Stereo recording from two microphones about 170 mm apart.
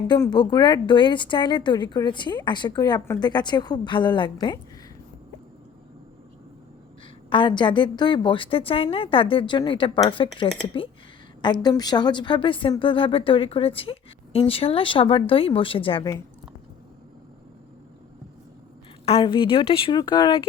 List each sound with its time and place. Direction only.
0.3 s speech: 25° left (ahead or behind)
7.3 s a woman's voice: 30° left (ahead or behind)
19.0 s a woman's voice: 30° left (ahead or behind)